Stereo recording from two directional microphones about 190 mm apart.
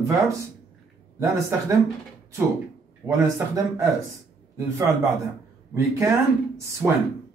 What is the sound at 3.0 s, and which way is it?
Speech, 15° right (ahead or behind).